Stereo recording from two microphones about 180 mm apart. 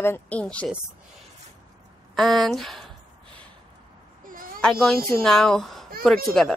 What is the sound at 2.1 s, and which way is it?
Speech, centre (ahead or behind).